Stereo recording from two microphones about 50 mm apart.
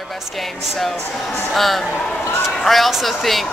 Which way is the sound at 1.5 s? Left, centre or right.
Centre.